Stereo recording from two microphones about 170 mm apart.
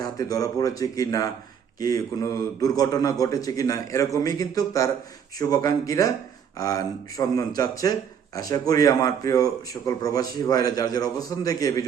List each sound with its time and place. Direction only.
0.0 s speech: 20° left (ahead or behind)